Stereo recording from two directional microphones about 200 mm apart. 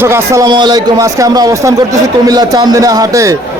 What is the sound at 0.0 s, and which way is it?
A man's voice, 15° right (ahead or behind).